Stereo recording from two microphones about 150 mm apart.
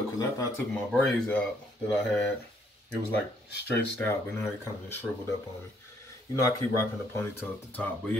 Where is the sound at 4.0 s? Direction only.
15° left (ahead or behind).